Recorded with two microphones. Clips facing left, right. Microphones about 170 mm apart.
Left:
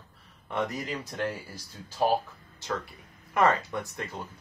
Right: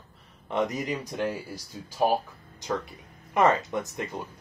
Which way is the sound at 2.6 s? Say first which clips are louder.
Right 3 dB; 20° right (ahead or behind).